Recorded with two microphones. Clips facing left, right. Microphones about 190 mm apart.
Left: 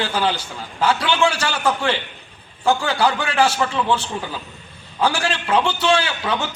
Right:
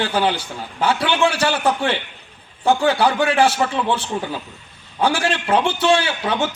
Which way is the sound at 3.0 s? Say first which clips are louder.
Right 2 dB; 60° right (ahead or behind).